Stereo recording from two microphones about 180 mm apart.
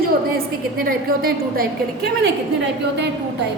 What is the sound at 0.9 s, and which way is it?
Speech, 55° right (ahead or behind).